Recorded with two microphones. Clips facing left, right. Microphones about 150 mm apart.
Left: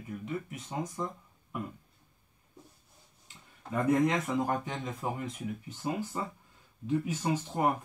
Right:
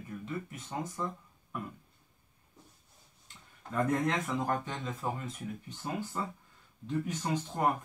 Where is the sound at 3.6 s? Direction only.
10° left (ahead or behind).